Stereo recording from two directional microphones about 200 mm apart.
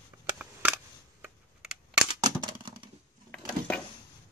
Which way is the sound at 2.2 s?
20° right (ahead or behind).